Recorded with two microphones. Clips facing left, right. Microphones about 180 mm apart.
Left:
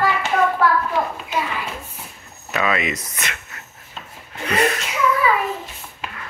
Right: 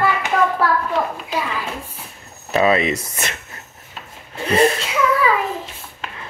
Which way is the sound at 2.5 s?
30° right (ahead or behind).